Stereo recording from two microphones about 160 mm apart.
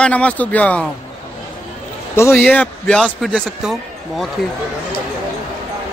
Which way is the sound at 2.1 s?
15° left (ahead or behind).